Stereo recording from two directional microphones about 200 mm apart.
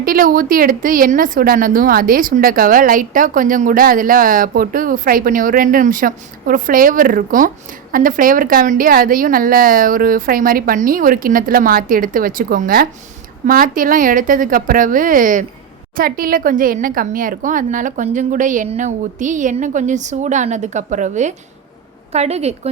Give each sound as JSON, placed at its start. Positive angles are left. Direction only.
{"t": 0.0, "sound": "a woman's voice", "side_deg": -45}